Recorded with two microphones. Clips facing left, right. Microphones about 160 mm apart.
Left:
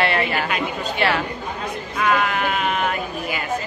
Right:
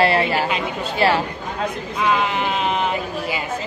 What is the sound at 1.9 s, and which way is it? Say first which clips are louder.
Speech: even; 25° right (ahead or behind).